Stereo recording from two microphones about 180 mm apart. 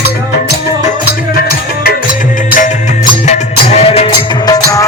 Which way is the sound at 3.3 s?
35° left (ahead or behind).